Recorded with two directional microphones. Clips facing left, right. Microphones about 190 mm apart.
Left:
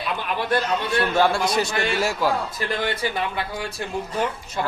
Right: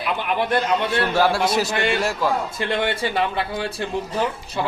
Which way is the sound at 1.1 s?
5° right (ahead or behind).